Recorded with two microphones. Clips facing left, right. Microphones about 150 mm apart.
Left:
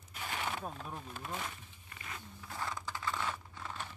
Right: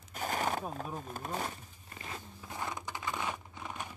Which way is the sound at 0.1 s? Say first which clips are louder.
Right 6 dB; 40° right (ahead or behind).